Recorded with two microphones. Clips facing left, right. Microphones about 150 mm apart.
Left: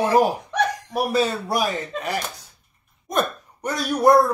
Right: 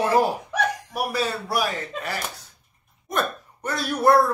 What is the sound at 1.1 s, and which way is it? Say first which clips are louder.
Speech: left 4 dB; 20° left (ahead or behind).